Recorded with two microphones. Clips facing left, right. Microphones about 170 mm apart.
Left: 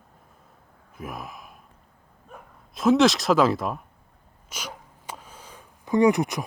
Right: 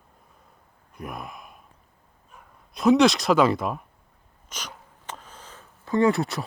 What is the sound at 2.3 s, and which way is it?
Dog, 55° left (ahead or behind).